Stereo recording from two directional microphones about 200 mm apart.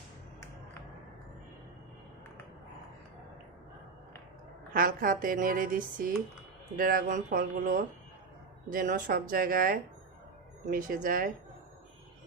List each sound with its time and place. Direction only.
4.7 s speech: 45° right (ahead or behind)